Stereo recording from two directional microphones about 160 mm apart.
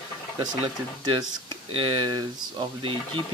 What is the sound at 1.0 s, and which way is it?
Speech, 25° right (ahead or behind).